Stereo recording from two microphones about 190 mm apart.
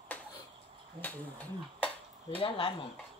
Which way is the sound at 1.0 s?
10° left (ahead or behind).